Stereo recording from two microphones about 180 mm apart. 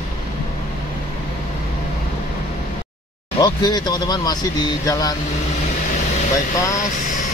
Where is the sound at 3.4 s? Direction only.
25° left (ahead or behind).